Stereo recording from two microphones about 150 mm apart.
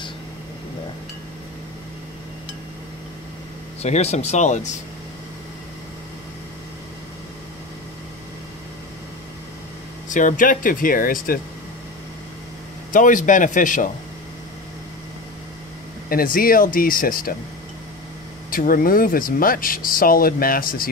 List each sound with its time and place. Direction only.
3.8 s speech: 45° left (ahead or behind)
10.0 s speech: 60° left (ahead or behind)
12.9 s speech: 60° left (ahead or behind)
16.1 s speech: 70° left (ahead or behind)
18.5 s speech: 70° left (ahead or behind)